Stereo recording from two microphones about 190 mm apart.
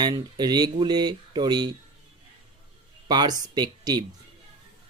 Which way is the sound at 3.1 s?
20° right (ahead or behind).